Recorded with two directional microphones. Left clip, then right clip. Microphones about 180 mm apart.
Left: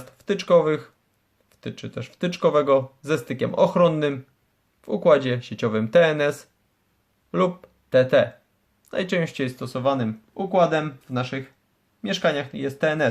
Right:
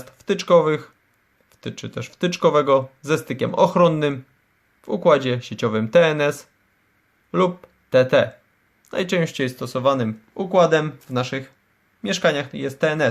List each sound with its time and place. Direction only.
0.0 s speech: 10° right (ahead or behind)